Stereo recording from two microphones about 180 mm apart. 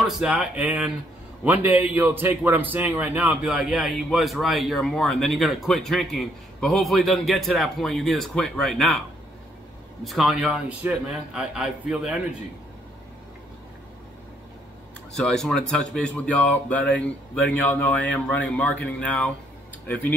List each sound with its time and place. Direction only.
0.0 s a man's voice: centre (ahead or behind)
10.0 s a man's voice: centre (ahead or behind)
15.1 s a man's voice: 5° left (ahead or behind)